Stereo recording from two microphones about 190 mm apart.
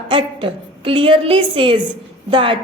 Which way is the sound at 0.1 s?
25° right (ahead or behind).